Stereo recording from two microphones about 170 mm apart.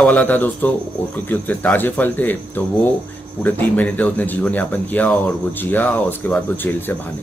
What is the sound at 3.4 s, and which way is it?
Speech, 10° left (ahead or behind).